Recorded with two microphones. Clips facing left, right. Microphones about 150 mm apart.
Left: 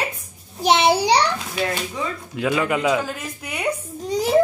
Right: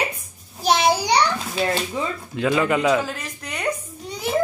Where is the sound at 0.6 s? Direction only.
25° left (ahead or behind).